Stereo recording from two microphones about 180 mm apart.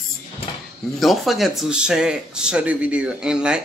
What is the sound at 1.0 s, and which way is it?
Speech, centre (ahead or behind).